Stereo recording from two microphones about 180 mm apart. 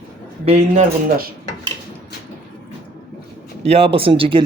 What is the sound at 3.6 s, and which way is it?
Speech, 35° right (ahead or behind).